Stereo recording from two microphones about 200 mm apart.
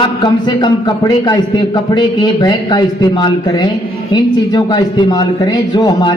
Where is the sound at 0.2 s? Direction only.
20° left (ahead or behind).